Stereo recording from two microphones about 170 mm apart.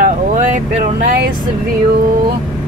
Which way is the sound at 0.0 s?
50° right (ahead or behind).